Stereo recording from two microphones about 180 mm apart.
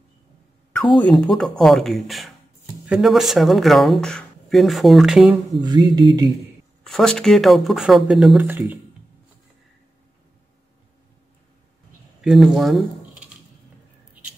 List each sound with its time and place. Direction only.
0.9 s speech: 10° left (ahead or behind)
5.6 s a sound: 25° right (ahead or behind)
6.8 s speech: 5° left (ahead or behind)
12.2 s speech: centre (ahead or behind)